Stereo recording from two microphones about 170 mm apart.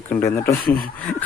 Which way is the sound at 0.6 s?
60° left (ahead or behind).